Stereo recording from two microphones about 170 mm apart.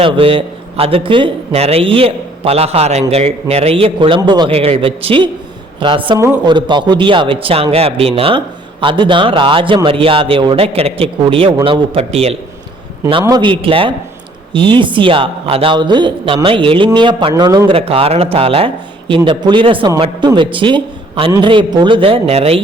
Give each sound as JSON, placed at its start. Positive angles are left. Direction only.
{"t": 0.0, "sound": "a man's voice", "side_deg": -30}
{"t": 13.2, "sound": "a man's voice", "side_deg": -25}
{"t": 17.7, "sound": "a man's voice", "side_deg": -35}